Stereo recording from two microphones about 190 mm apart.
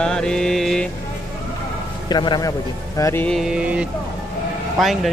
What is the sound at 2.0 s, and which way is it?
Speech, 20° left (ahead or behind).